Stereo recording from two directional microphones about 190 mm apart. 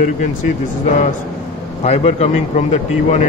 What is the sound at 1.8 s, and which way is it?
Speech, 35° left (ahead or behind).